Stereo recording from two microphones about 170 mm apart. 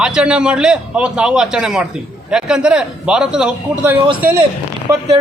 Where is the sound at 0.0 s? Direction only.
5° right (ahead or behind).